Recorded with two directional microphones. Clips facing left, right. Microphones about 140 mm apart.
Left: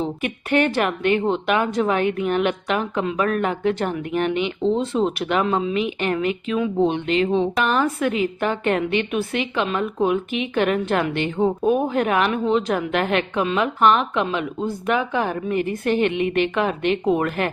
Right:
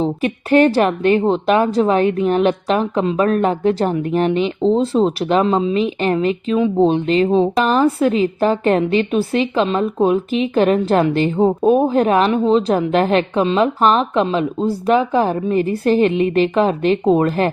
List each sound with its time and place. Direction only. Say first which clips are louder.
0.0 s a woman's voice: right 6 dB; 35° right (ahead or behind)